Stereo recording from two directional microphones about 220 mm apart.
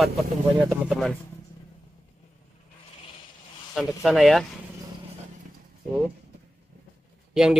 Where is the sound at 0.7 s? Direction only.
Centre (ahead or behind).